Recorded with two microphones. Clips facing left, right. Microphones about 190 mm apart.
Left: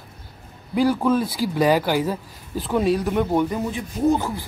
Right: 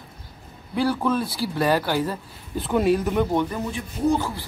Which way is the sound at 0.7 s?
15° left (ahead or behind).